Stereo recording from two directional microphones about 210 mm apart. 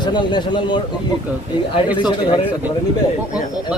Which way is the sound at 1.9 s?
20° left (ahead or behind).